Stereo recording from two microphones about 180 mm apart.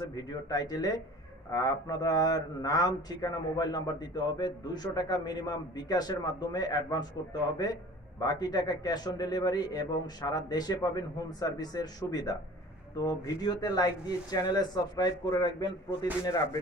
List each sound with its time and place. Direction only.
0.1 s a man's voice: 20° left (ahead or behind)